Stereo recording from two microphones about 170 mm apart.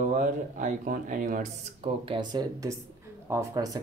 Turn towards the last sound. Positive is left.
turn(degrees=-20)  # may be behind; listen again after turning